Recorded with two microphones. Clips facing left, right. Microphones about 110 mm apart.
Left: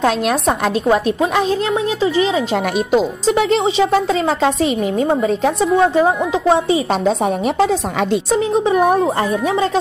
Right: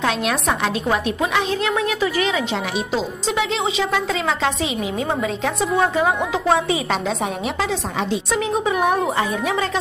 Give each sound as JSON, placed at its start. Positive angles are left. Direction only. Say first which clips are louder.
{"t": 0.0, "sound": "a woman's voice", "louder": "left 5 dB", "side_deg": 40}
{"t": 2.5, "sound": "a woman's voice", "louder": "left 7 dB", "side_deg": 45}
{"t": 5.6, "sound": "a woman's voice", "louder": "left 4 dB", "side_deg": 0}
{"t": 6.0, "sound": "a woman's voice", "louder": "left 4 dB", "side_deg": 35}